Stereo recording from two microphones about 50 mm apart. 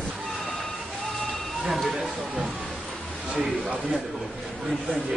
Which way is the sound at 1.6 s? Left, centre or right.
Centre.